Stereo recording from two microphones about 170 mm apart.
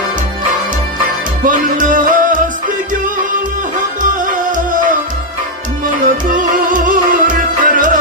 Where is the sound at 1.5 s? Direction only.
50° right (ahead or behind).